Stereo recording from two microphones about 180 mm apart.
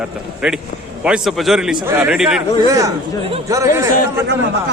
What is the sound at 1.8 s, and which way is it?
Speech, 15° right (ahead or behind).